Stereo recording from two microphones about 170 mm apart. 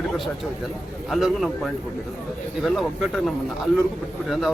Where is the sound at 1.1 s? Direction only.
Centre (ahead or behind).